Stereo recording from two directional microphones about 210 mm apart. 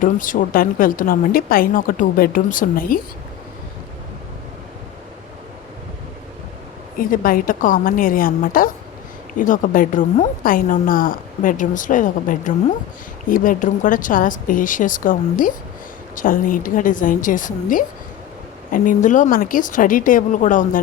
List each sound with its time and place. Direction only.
0.0 s a woman's voice: 40° left (ahead or behind)
7.1 s a woman's voice: 40° left (ahead or behind)